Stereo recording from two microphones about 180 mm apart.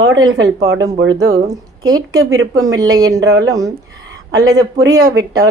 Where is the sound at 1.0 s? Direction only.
90° right.